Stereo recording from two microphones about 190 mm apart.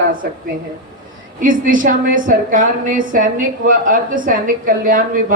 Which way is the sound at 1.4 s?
45° right (ahead or behind).